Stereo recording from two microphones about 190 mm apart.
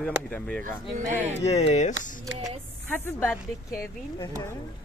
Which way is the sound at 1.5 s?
35° left (ahead or behind).